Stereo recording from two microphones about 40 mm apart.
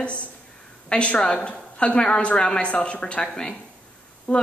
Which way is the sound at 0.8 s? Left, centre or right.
Left.